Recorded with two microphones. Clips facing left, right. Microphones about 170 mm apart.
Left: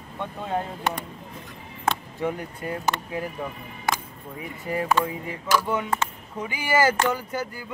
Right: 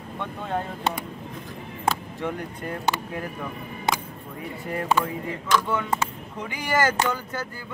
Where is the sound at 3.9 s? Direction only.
20° right (ahead or behind).